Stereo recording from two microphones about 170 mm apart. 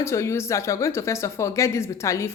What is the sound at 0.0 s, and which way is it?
Speech, 15° left (ahead or behind).